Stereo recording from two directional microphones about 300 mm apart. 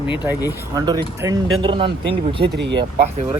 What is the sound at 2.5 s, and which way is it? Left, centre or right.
Speech, right.